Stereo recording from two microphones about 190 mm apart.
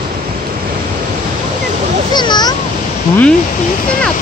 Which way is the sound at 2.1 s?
20° left (ahead or behind).